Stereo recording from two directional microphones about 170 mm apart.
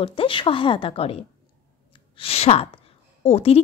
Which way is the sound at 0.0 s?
30° left (ahead or behind).